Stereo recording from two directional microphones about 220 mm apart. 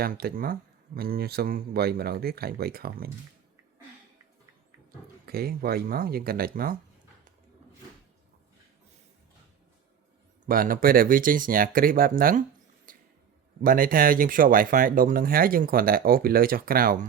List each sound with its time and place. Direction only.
0.0 s speech: 45° right (ahead or behind)
5.2 s speech: 45° right (ahead or behind)
10.4 s speech: 40° right (ahead or behind)